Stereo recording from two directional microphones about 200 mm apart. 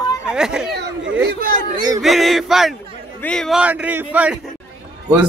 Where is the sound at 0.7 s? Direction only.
60° right (ahead or behind).